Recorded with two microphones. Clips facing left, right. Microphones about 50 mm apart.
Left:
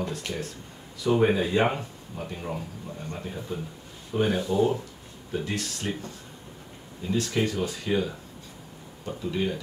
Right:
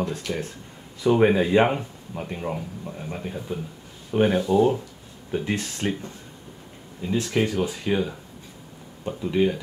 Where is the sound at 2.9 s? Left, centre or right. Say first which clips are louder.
Right 2 dB; centre.